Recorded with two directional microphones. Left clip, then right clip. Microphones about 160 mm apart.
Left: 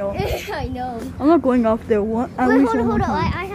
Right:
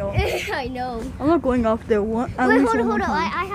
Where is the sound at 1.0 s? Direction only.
10° left (ahead or behind).